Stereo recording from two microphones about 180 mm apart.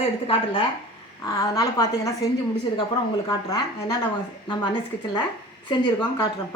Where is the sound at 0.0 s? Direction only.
30° left (ahead or behind).